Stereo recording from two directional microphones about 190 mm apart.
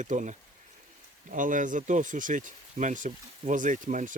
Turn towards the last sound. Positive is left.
turn(degrees=-40)  # may be behind; listen again after turning